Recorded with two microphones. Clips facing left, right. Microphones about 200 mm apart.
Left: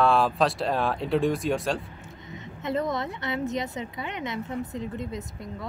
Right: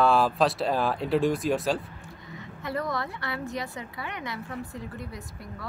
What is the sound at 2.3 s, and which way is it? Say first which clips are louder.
A woman's voice: left 4 dB; 20° left (ahead or behind).